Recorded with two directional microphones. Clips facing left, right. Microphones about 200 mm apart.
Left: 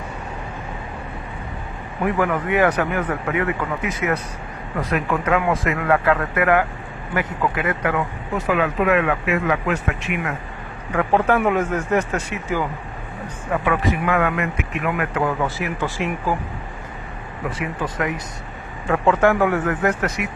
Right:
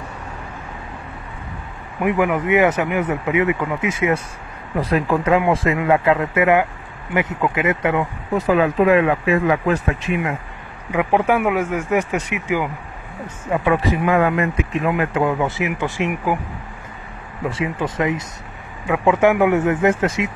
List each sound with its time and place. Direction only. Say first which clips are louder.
2.0 s a man's voice: right 3 dB; 20° right (ahead or behind)
10.9 s speech: right 1 dB; 15° right (ahead or behind)
13.5 s a man's voice: right 3 dB; 25° right (ahead or behind)
17.5 s a man's voice: right 4 dB; 25° right (ahead or behind)